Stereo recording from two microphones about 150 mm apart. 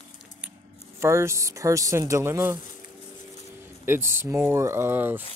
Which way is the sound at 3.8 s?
15° right (ahead or behind).